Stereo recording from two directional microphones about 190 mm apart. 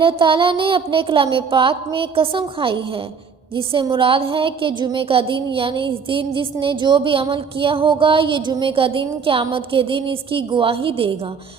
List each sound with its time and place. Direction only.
0.0 s a woman's voice: 25° right (ahead or behind)